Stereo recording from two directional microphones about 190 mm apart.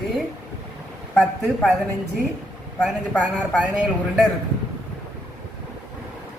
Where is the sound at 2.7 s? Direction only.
5° left (ahead or behind).